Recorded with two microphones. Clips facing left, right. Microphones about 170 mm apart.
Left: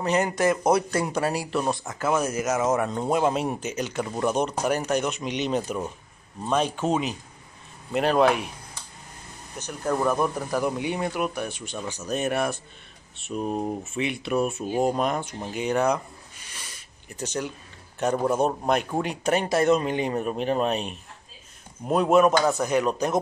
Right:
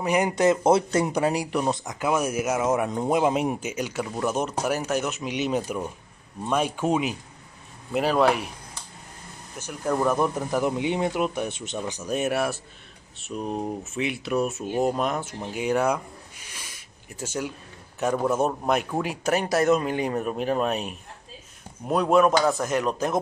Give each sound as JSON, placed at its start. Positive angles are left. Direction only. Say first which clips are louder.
{"t": 0.0, "sound": "speech", "louder": "right 1 dB", "side_deg": -15}
{"t": 9.6, "sound": "speech", "louder": "right 1 dB", "side_deg": -10}
{"t": 10.2, "sound": "speech", "louder": "right 1 dB", "side_deg": -20}
{"t": 16.5, "sound": "a sound", "louder": "left 1 dB", "side_deg": -10}
{"t": 17.9, "sound": "speech", "louder": "even", "side_deg": -5}
{"t": 21.8, "sound": "speech", "louder": "left 1 dB", "side_deg": 5}